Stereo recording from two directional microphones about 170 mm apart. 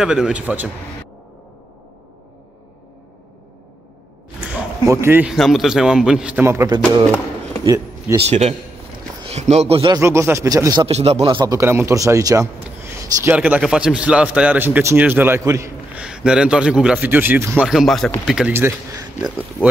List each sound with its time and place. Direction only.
0.0 s a man's voice: 5° right (ahead or behind)
4.8 s a man's voice: 15° right (ahead or behind)
5.3 s a man's voice: centre (ahead or behind)
7.6 s a sound: 20° right (ahead or behind)
8.2 s a man's voice: 40° right (ahead or behind)
9.9 s a man's voice: 15° right (ahead or behind)
10.9 s a man's voice: 35° right (ahead or behind); by 16.0 s 15° right (ahead or behind)
16.0 s a man's voice: 5° right (ahead or behind)
17.6 s a man's voice: centre (ahead or behind)
18.5 s a man's voice: 15° right (ahead or behind)
19.6 s speech: 10° left (ahead or behind)